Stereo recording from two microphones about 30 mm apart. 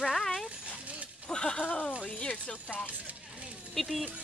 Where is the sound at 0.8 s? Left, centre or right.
Right.